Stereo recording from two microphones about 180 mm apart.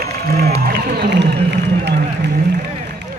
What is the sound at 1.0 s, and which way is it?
Speech, 65° right (ahead or behind).